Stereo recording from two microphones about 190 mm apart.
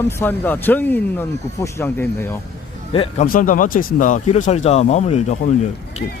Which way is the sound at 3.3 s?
45° left (ahead or behind).